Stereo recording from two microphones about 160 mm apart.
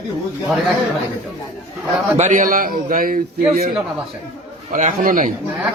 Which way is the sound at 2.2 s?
55° right (ahead or behind).